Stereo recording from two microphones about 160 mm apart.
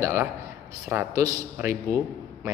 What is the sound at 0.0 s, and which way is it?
Speech, 20° right (ahead or behind).